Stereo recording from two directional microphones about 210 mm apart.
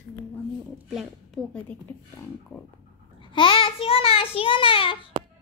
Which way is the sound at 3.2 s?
25° left (ahead or behind).